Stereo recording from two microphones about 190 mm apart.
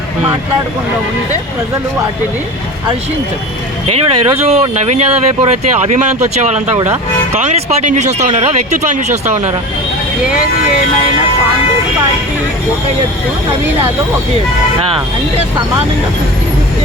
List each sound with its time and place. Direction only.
3.8 s speech: 30° right (ahead or behind)